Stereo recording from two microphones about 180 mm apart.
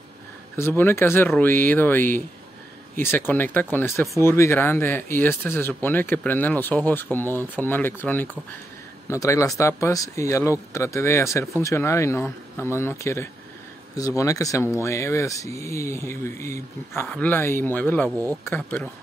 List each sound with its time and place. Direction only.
0.6 s speech: 15° left (ahead or behind)